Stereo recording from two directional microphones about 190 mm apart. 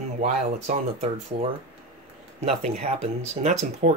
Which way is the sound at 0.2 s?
30° right (ahead or behind).